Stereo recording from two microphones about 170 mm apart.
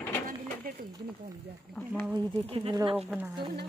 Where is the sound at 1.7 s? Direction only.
65° right (ahead or behind).